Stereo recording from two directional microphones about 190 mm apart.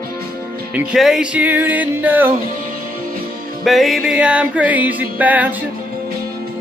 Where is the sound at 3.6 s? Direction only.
Centre (ahead or behind).